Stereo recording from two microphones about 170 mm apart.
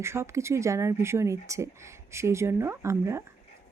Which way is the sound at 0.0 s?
15° right (ahead or behind).